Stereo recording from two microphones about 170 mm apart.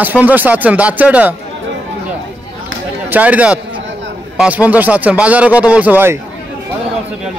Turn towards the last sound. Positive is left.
turn(degrees=-10)  # may be behind; listen again after turning